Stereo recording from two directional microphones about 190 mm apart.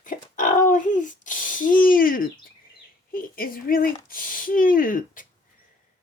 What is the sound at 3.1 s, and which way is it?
Speech, 50° left (ahead or behind).